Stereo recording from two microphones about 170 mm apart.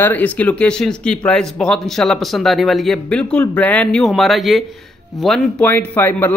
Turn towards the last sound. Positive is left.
turn(degrees=10)  # may be behind; listen again after turning